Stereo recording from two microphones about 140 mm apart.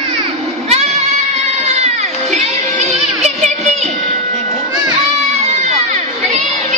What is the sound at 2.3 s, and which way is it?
Music, 50° right (ahead or behind).